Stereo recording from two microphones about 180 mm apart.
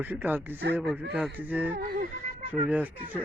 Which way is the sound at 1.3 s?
10° right (ahead or behind).